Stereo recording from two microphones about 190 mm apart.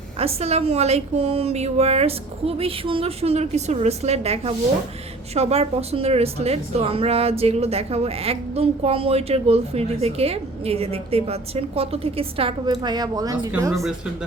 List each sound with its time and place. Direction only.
0.2 s speech: 30° right (ahead or behind); by 13.7 s 15° right (ahead or behind)